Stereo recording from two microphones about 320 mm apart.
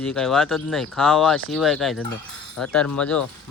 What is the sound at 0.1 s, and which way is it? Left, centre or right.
Speech, centre.